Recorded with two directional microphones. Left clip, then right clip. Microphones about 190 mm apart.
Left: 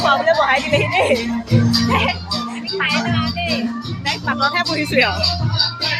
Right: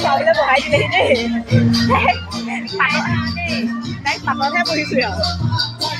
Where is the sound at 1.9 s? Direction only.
20° right (ahead or behind).